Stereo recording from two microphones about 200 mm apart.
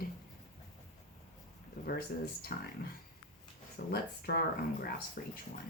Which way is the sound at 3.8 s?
50° left (ahead or behind).